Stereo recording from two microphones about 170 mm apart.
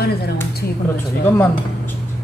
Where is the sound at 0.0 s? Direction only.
70° left (ahead or behind).